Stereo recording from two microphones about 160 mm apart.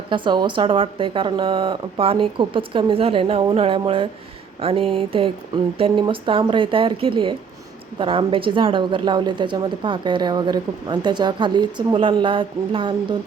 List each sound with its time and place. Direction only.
0.1 s a woman's voice: 30° right (ahead or behind)